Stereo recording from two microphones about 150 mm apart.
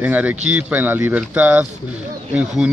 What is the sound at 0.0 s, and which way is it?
A man's voice, 10° right (ahead or behind).